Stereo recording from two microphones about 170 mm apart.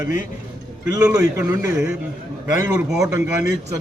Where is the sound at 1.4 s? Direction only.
20° right (ahead or behind).